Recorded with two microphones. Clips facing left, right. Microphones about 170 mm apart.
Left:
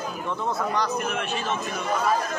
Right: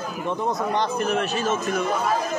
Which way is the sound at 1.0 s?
35° right (ahead or behind).